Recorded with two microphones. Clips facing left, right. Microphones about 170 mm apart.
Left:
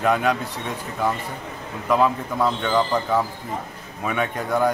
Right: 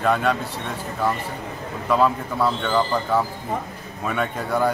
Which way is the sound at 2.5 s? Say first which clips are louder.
Even; centre (ahead or behind).